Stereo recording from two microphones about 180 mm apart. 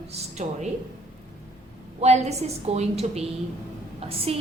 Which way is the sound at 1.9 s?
40° right (ahead or behind).